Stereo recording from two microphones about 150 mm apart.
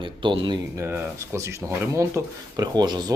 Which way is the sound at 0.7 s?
15° right (ahead or behind).